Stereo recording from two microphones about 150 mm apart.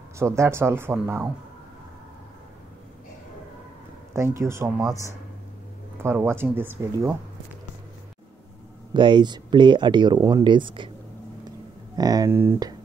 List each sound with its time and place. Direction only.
0.2 s speech: 15° right (ahead or behind)
4.1 s speech: 20° right (ahead or behind)
8.9 s speech: 30° right (ahead or behind)
12.0 s speech: 25° right (ahead or behind)